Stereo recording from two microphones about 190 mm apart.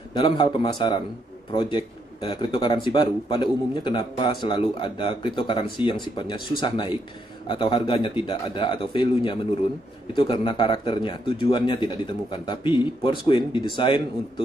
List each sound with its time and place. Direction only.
0.1 s speech: 25° left (ahead or behind)